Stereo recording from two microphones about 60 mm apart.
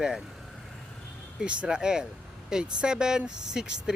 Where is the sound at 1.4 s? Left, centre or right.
Centre.